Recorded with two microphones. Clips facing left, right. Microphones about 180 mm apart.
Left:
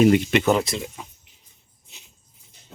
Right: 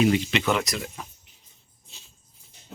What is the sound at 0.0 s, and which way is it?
Speech, 50° left (ahead or behind).